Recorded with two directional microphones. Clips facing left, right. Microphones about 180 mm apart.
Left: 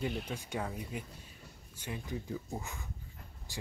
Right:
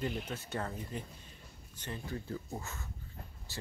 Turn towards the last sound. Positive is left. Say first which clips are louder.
# left 1 dB
turn(degrees=15)  # may be behind; listen again after turning